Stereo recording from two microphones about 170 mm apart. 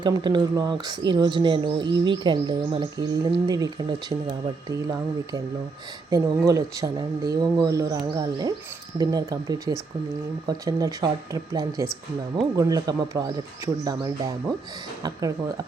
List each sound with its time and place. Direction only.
0.0 s speech: 25° right (ahead or behind)